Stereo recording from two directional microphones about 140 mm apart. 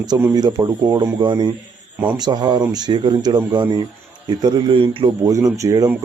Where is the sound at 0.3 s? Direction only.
30° right (ahead or behind).